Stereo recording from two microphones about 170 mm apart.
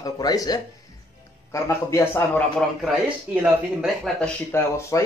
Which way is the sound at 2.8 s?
5° right (ahead or behind).